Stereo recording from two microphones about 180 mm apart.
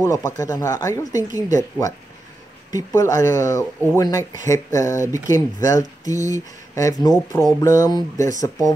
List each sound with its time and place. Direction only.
0.0 s speech: 20° left (ahead or behind)